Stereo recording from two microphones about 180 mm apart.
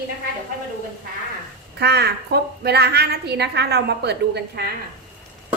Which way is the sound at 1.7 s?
65° right (ahead or behind).